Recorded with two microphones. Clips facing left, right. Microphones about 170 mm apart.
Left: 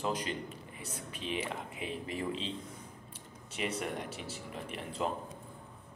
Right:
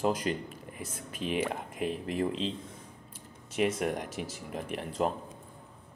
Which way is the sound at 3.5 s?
45° right (ahead or behind).